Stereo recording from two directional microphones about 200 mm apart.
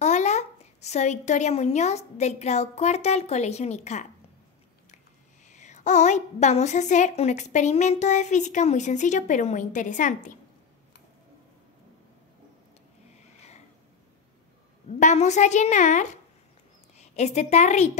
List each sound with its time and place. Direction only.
0.0 s a woman's voice: 35° left (ahead or behind)
5.5 s a woman's voice: 35° left (ahead or behind)
15.0 s a woman's voice: 35° left (ahead or behind)